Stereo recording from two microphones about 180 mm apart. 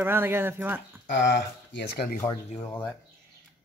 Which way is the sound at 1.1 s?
75° left (ahead or behind).